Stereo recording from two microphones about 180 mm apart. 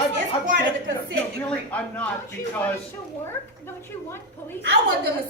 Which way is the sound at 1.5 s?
10° left (ahead or behind).